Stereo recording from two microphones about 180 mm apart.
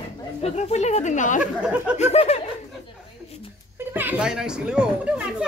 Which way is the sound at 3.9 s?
10° right (ahead or behind).